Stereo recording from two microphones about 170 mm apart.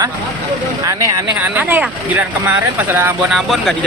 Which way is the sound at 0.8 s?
20° right (ahead or behind).